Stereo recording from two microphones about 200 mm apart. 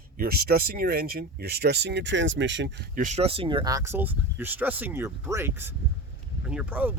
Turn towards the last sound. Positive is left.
turn(degrees=-10)  # may be behind; listen again after turning